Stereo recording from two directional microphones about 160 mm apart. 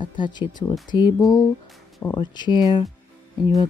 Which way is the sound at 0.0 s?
30° left (ahead or behind).